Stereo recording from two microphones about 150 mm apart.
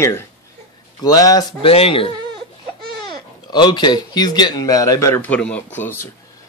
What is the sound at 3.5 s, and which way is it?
Speech, 30° left (ahead or behind).